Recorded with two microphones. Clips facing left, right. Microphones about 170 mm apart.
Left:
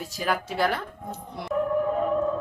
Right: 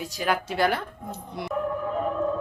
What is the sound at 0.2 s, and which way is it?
Speech, centre (ahead or behind).